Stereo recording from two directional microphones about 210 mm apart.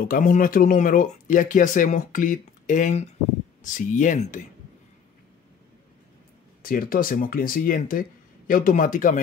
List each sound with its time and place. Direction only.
0.0 s speech: 40° left (ahead or behind)
6.6 s speech: 40° left (ahead or behind)